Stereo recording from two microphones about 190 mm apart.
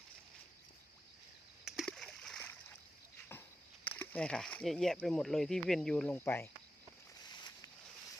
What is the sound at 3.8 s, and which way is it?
Speech, 10° left (ahead or behind).